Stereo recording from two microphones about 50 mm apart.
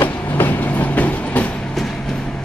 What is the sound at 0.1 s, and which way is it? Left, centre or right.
Train, left.